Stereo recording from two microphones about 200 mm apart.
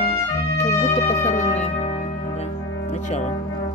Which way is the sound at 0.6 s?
35° left (ahead or behind).